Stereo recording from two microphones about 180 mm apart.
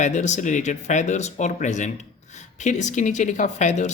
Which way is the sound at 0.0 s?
40° left (ahead or behind).